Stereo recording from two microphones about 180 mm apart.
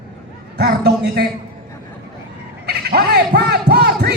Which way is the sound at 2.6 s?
65° right (ahead or behind).